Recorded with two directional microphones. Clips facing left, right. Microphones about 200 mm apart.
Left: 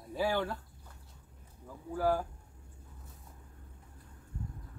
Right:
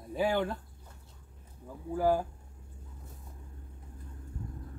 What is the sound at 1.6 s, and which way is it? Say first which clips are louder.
Speech: right 3 dB; 20° right (ahead or behind).